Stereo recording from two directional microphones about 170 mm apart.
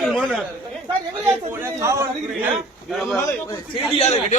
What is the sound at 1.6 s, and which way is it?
Speech, 15° right (ahead or behind).